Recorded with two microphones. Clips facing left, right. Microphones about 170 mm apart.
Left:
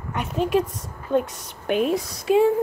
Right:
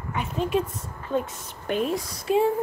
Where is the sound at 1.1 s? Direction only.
60° left (ahead or behind).